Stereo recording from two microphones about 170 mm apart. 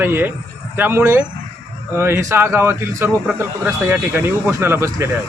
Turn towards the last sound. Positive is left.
turn(degrees=-15)  # may be behind; listen again after turning